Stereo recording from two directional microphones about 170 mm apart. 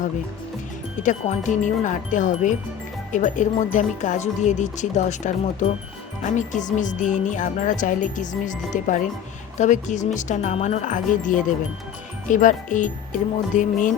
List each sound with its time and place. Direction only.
1.0 s music: 45° left (ahead or behind)